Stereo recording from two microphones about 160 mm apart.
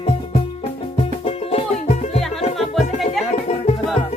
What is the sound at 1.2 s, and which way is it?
Music, 40° left (ahead or behind).